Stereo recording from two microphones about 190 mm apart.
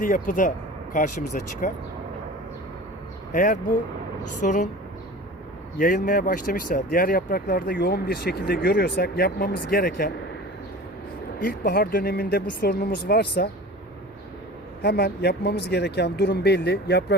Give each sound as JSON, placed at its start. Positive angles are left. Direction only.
{"t": 0.0, "sound": "speech", "side_deg": 45}
{"t": 3.3, "sound": "speech", "side_deg": 45}
{"t": 5.8, "sound": "speech", "side_deg": 45}
{"t": 11.4, "sound": "speech", "side_deg": 50}
{"t": 14.8, "sound": "speech", "side_deg": 60}